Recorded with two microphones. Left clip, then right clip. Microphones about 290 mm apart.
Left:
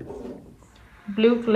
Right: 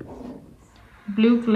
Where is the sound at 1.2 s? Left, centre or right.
Centre.